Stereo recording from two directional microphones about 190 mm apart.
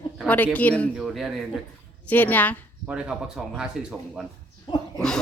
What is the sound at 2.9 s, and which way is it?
Cough, 5° right (ahead or behind).